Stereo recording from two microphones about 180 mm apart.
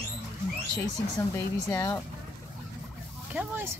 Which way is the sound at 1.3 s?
15° left (ahead or behind).